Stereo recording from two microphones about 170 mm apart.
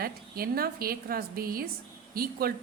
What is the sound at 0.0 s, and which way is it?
A woman's voice, 60° right (ahead or behind).